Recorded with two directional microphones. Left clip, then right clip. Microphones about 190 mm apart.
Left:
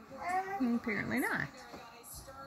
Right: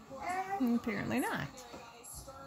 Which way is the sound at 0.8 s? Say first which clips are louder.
Left 1 dB; 40° right (ahead or behind).